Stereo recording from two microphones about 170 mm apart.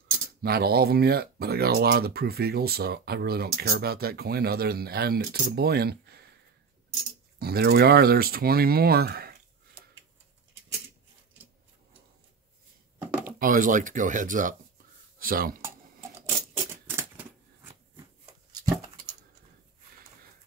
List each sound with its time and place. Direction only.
0.4 s speech: 65° right (ahead or behind)
7.3 s speech: 65° right (ahead or behind)
13.4 s speech: 55° right (ahead or behind)
16.2 s a sound: 15° right (ahead or behind)